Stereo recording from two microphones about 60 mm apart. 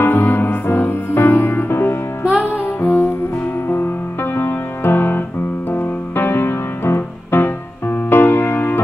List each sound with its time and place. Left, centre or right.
0.0 s music: left